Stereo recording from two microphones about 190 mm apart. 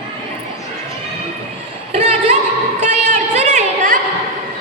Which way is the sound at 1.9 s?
35° right (ahead or behind).